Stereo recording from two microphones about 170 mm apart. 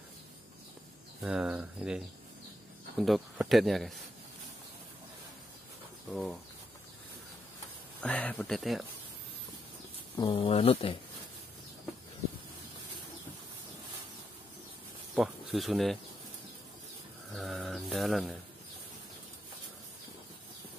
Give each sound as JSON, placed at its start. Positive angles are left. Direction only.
{"t": 1.2, "sound": "speech", "side_deg": -5}
{"t": 8.0, "sound": "speech", "side_deg": 10}
{"t": 10.1, "sound": "speech", "side_deg": 30}
{"t": 15.1, "sound": "speech", "side_deg": 0}
{"t": 17.3, "sound": "speech", "side_deg": 0}